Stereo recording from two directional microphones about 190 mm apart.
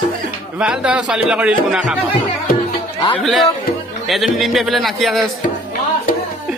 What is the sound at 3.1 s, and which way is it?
A man's voice, centre (ahead or behind).